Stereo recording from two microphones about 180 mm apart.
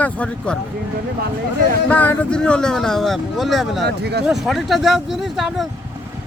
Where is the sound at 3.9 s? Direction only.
65° right (ahead or behind).